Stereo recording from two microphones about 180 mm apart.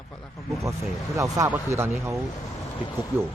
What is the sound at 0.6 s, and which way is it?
A man's voice, 15° right (ahead or behind).